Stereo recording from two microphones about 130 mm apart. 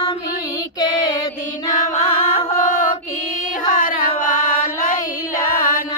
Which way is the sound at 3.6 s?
90° left.